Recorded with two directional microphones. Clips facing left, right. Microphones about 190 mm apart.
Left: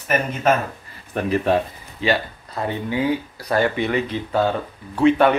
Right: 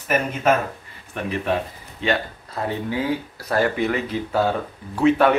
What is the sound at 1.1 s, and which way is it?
Speech, 35° left (ahead or behind).